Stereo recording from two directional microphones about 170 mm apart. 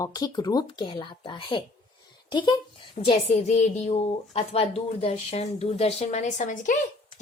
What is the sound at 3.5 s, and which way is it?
Speech, 40° left (ahead or behind).